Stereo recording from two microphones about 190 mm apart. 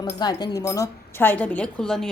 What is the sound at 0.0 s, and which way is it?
Speech, 20° left (ahead or behind).